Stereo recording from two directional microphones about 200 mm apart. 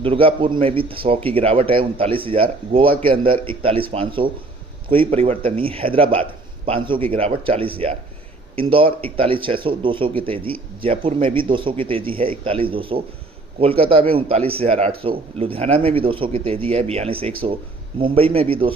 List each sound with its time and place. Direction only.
0.0 s speech: 25° right (ahead or behind)